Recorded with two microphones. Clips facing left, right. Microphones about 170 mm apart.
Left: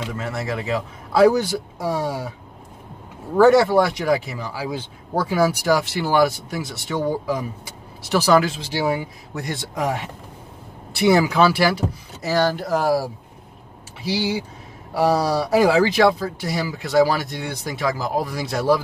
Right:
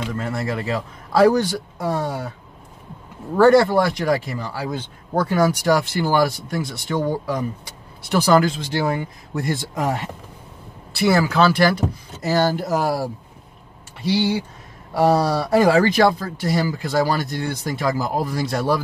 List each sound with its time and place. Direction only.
0.1 s speech: centre (ahead or behind)
3.3 s speech: 5° left (ahead or behind)
11.0 s speech: 15° left (ahead or behind)